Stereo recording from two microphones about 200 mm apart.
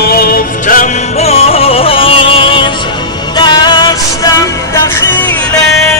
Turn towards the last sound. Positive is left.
turn(degrees=20)  # may be behind; listen again after turning